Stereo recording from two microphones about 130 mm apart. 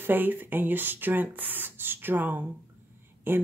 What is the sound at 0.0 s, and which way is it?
Speech, 15° right (ahead or behind).